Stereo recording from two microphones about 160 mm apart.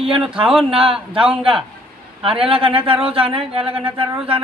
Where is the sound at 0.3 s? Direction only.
35° right (ahead or behind).